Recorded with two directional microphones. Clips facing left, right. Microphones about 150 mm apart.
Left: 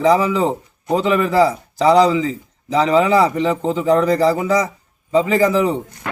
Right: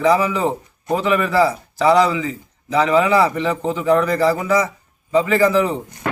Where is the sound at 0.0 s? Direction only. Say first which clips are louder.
Left 2 dB; 25° left (ahead or behind).